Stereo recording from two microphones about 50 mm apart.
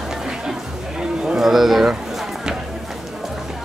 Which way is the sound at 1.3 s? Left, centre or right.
Centre.